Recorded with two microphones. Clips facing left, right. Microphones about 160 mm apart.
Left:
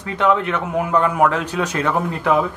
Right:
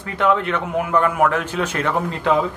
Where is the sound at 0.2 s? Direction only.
15° left (ahead or behind).